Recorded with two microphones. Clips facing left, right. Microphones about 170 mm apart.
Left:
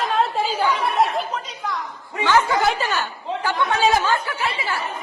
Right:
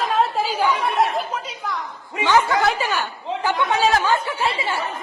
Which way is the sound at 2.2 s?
20° right (ahead or behind).